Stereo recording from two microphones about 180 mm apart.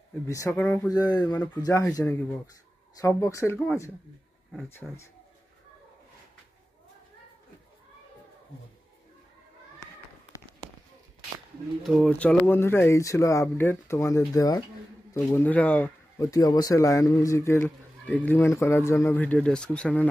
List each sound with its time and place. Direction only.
0.3 s speech: 15° left (ahead or behind)
11.8 s speech: centre (ahead or behind); by 14.6 s 20° left (ahead or behind)
15.1 s speech: 10° left (ahead or behind)